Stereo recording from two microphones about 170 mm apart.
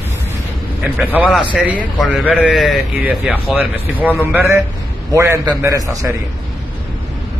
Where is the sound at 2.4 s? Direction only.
Centre (ahead or behind); by 6.0 s 20° right (ahead or behind).